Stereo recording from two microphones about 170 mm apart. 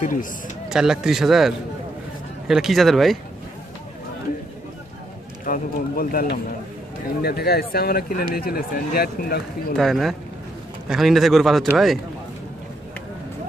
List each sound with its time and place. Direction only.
0.0 s speech: 50° left (ahead or behind)
0.7 s speech: 5° right (ahead or behind)
5.4 s speech: 55° left (ahead or behind)
7.2 s speech: 70° left (ahead or behind)
9.8 s speech: centre (ahead or behind)